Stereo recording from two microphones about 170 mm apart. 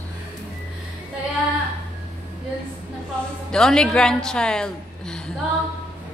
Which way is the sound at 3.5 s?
5° left (ahead or behind).